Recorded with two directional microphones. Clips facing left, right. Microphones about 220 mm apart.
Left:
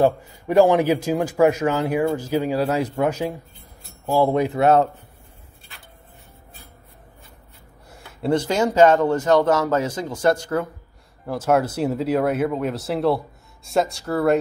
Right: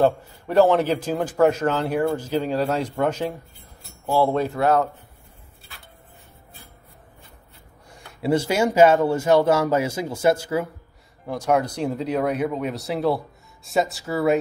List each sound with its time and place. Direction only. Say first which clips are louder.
0.0 s a man's voice: left 1 dB; 10° left (ahead or behind)
8.2 s speech: even; 10° right (ahead or behind)
11.2 s speech: left 2 dB; 5° left (ahead or behind)